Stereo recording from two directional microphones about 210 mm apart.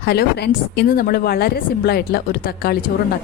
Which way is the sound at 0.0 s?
50° left (ahead or behind).